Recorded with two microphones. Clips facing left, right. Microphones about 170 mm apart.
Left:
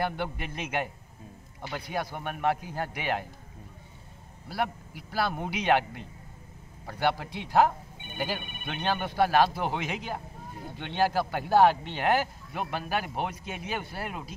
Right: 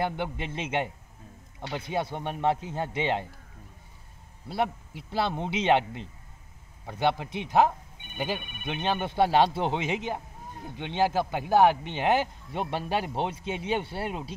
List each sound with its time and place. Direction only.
0.0 s speech: 20° right (ahead or behind)
4.5 s speech: 25° right (ahead or behind)